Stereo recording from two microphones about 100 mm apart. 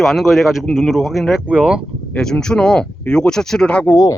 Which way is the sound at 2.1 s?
5° left (ahead or behind).